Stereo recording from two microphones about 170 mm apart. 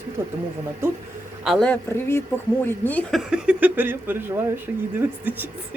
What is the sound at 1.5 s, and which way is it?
Speech, 5° left (ahead or behind).